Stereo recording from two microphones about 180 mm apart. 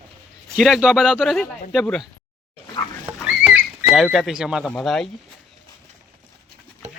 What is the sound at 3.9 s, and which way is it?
Speech, centre (ahead or behind).